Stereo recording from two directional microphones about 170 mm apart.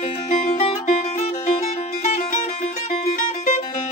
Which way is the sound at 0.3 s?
40° left (ahead or behind).